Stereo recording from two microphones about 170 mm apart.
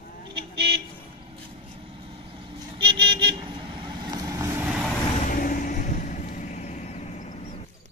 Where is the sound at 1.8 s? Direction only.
30° right (ahead or behind).